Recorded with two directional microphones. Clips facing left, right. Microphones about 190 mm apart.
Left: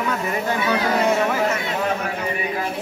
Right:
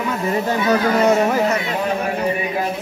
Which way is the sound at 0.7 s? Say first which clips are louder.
Right 5 dB; 40° right (ahead or behind).